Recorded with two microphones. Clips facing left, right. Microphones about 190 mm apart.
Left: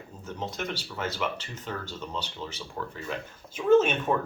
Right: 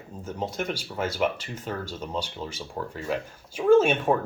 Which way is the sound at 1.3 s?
10° right (ahead or behind).